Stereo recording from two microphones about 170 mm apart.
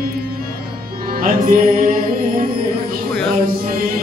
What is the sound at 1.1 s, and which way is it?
Music, 55° right (ahead or behind).